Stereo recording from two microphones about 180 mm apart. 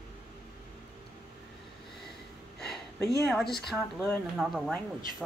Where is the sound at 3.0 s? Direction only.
Centre (ahead or behind).